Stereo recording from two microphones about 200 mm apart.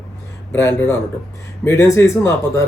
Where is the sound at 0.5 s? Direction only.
10° left (ahead or behind).